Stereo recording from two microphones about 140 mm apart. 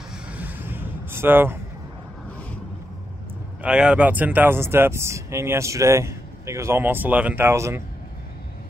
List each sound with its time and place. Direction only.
0.3 s vehicle: 10° right (ahead or behind)
3.6 s speech: 5° right (ahead or behind)